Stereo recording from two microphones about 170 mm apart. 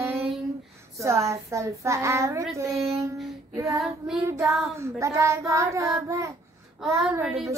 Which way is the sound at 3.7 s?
5° right (ahead or behind).